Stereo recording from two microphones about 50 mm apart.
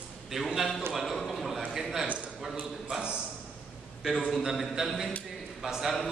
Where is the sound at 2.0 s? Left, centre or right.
Right.